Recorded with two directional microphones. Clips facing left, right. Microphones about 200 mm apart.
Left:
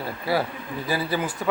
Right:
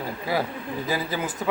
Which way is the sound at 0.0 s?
15° right (ahead or behind).